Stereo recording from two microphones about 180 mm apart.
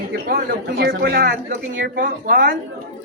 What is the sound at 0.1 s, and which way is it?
A woman's voice, 60° right (ahead or behind).